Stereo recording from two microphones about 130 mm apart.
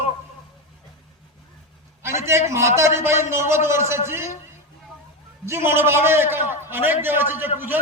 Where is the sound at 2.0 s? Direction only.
20° right (ahead or behind).